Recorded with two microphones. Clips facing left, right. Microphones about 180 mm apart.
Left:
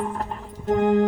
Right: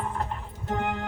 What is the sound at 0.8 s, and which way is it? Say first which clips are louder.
Music: left 15 dB; 35° left (ahead or behind).